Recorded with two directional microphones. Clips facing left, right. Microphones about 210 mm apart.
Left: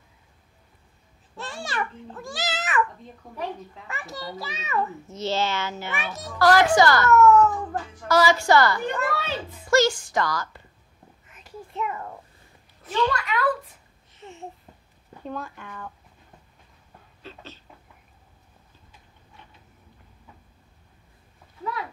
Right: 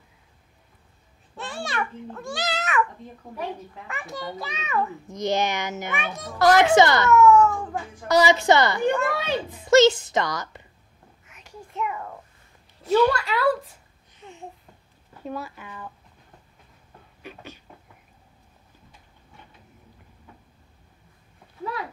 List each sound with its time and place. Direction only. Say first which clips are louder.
1.3 s a child's voice: right 2 dB; centre (ahead or behind)
3.9 s a child's voice: right 2 dB; centre (ahead or behind)
5.0 s a child's voice: right 2 dB; 15° right (ahead or behind)
7.1 s cat: right 1 dB; centre (ahead or behind)
7.7 s a child's voice: right 1 dB; 20° right (ahead or behind)
11.2 s a sound: left 2 dB; centre (ahead or behind)
13.2 s a child's voice: right 2 dB; 30° right (ahead or behind)
14.1 s a sound: left 1 dB; centre (ahead or behind)
15.2 s a child's voice: right 1 dB; 5° right (ahead or behind)
17.2 s a sound: right 2 dB; 15° right (ahead or behind)